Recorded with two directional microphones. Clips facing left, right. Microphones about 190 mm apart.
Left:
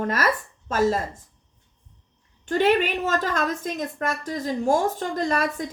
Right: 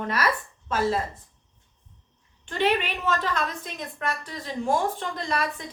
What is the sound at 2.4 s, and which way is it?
A woman's voice, 45° left (ahead or behind).